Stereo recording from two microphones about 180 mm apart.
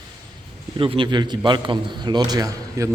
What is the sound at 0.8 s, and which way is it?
A man's voice, 30° right (ahead or behind).